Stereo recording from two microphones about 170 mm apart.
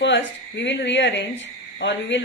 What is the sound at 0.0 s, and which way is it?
Speech, 90° left.